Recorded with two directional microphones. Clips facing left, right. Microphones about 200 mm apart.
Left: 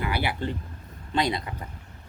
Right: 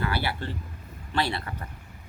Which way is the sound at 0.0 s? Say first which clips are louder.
Left 1 dB; 15° left (ahead or behind).